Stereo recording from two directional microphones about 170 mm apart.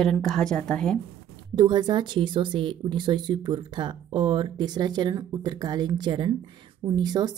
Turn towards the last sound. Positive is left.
turn(degrees=-25)  # may be behind; listen again after turning